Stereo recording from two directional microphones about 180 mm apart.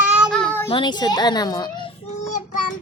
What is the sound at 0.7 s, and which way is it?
Child singing, 25° left (ahead or behind).